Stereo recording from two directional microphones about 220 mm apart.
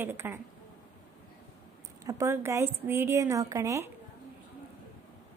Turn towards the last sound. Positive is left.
turn(degrees=-15)  # may be behind; listen again after turning